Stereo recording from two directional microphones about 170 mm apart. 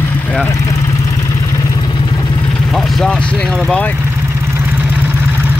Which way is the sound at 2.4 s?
5° left (ahead or behind).